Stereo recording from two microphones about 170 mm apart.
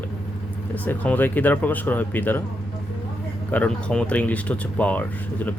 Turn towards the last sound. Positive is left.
turn(degrees=10)  # may be behind; listen again after turning